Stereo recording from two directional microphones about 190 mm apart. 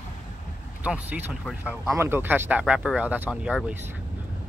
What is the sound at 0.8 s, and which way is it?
Speech, 5° right (ahead or behind).